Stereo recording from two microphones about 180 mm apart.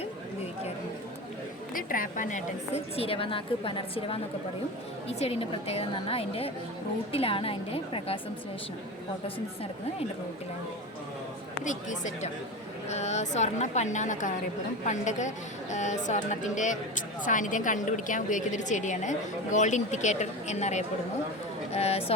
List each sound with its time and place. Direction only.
1.7 s a woman's voice: 50° left (ahead or behind); by 8.2 s 30° left (ahead or behind)
11.6 s a woman's voice: 45° left (ahead or behind)